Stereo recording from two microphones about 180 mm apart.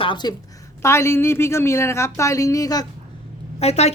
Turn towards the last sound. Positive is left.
turn(degrees=35)  # may be behind; listen again after turning